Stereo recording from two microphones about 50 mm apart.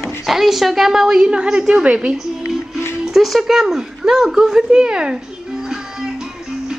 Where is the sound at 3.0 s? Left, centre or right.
Centre.